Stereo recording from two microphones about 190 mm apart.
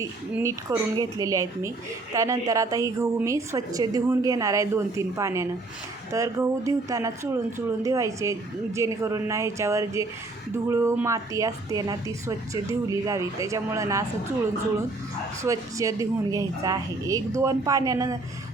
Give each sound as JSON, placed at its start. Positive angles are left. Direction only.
{"t": 0.0, "sound": "a woman's voice", "side_deg": -10}
{"t": 15.4, "sound": "a woman's voice", "side_deg": -15}